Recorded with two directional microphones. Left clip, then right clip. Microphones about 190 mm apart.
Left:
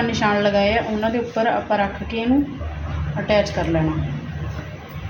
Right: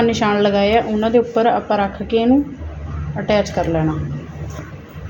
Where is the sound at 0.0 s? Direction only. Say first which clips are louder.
Right 3 dB; 50° right (ahead or behind).